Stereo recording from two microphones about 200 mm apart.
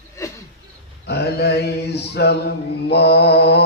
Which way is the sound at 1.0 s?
55° left (ahead or behind).